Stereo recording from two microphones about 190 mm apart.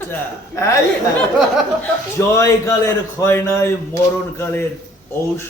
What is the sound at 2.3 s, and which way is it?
A man's voice, 15° left (ahead or behind).